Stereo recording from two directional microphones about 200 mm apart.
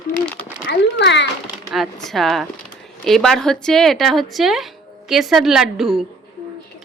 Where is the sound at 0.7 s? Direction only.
60° left (ahead or behind).